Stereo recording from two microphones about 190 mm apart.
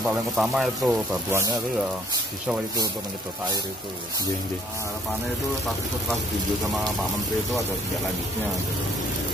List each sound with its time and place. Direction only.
0.0 s speech: centre (ahead or behind)
1.3 s speech: 15° right (ahead or behind)